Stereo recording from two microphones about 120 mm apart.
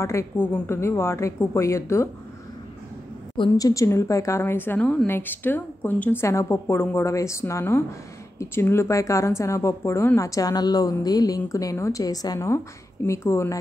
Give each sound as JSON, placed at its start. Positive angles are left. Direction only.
{"t": 0.0, "sound": "speech", "side_deg": 25}
{"t": 3.5, "sound": "speech", "side_deg": 30}